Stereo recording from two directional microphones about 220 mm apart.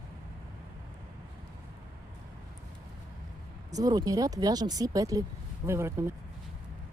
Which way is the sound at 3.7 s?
15° right (ahead or behind).